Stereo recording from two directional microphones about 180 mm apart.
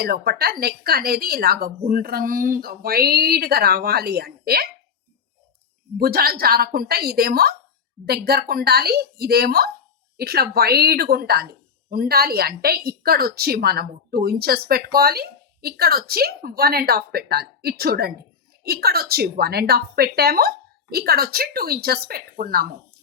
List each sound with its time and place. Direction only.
0.0 s a woman's voice: 60° right (ahead or behind)
6.0 s a woman's voice: 60° right (ahead or behind)